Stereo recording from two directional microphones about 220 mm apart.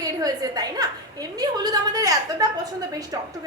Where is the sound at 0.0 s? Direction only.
15° right (ahead or behind).